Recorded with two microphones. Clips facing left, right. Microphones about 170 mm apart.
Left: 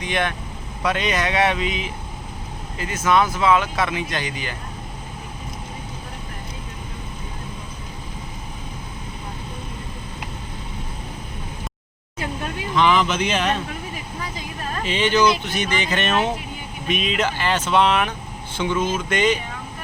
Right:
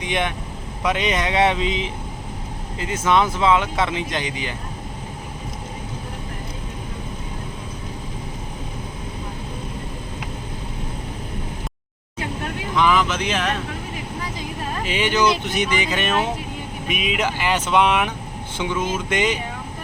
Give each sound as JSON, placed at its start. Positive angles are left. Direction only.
{"t": 0.0, "sound": "speech", "side_deg": -20}
{"t": 12.7, "sound": "speech", "side_deg": -5}
{"t": 14.8, "sound": "speech", "side_deg": -10}